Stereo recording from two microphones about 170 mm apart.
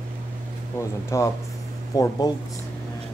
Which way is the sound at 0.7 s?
15° left (ahead or behind).